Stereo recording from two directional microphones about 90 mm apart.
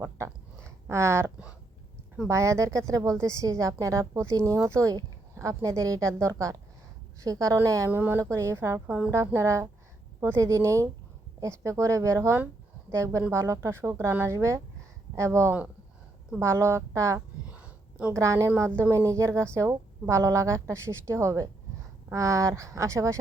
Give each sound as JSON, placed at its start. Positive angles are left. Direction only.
{"t": 0.0, "sound": "a sound", "side_deg": -30}
{"t": 2.2, "sound": "a woman's voice", "side_deg": -35}
{"t": 7.9, "sound": "speech", "side_deg": -20}
{"t": 8.2, "sound": "a woman's voice", "side_deg": -35}